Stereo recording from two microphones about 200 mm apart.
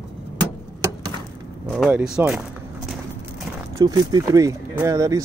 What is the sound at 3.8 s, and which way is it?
Speech, 20° right (ahead or behind).